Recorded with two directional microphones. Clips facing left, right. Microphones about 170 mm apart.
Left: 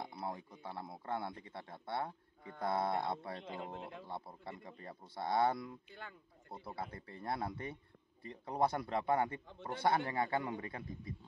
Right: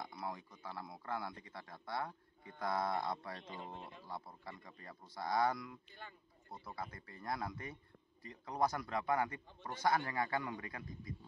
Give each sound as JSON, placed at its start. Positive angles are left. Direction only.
{"t": 0.0, "sound": "speech", "side_deg": 30}
{"t": 3.4, "sound": "a man's voice", "side_deg": 90}
{"t": 4.1, "sound": "speech", "side_deg": 25}
{"t": 5.9, "sound": "a man's voice", "side_deg": 90}
{"t": 6.6, "sound": "speech", "side_deg": 30}